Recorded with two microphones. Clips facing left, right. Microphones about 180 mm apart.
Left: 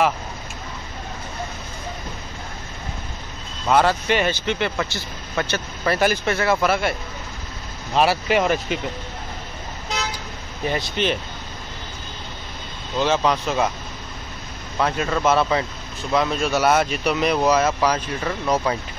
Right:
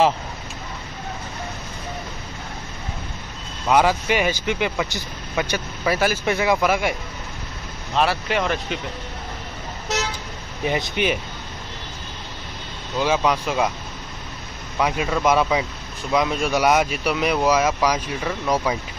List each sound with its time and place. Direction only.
3.6 s speech: 10° right (ahead or behind)
7.9 s speech: 5° left (ahead or behind)
10.6 s speech: 15° right (ahead or behind)
13.0 s speech: 10° right (ahead or behind)
14.8 s speech: 10° right (ahead or behind)